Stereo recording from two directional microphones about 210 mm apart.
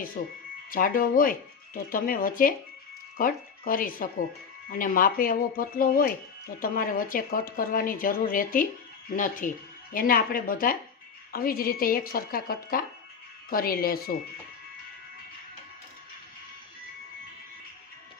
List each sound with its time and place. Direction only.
0.2 s speech: 40° left (ahead or behind)